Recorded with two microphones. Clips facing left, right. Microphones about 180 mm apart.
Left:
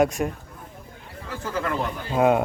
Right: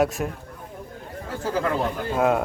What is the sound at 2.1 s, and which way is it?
Speech, centre (ahead or behind).